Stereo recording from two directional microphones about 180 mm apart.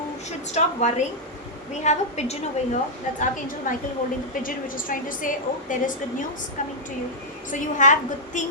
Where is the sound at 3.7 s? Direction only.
50° left (ahead or behind).